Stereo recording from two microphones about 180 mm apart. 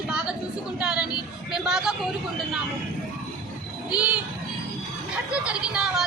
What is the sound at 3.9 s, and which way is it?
Speech, 5° right (ahead or behind).